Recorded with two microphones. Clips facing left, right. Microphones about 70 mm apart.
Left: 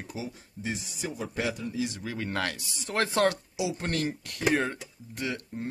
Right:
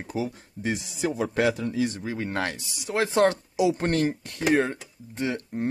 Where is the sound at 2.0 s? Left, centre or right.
Right.